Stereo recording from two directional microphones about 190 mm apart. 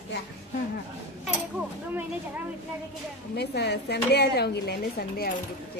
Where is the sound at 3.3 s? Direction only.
60° left (ahead or behind).